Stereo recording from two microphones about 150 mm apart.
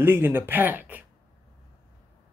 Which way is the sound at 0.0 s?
15° right (ahead or behind).